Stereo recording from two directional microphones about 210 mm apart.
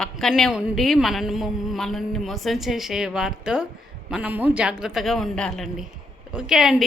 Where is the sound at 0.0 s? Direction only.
Centre (ahead or behind).